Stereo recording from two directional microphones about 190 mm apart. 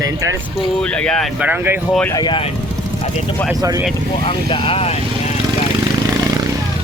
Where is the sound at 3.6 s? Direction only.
20° right (ahead or behind).